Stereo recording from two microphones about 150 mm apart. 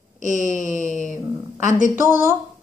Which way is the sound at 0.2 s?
55° right (ahead or behind).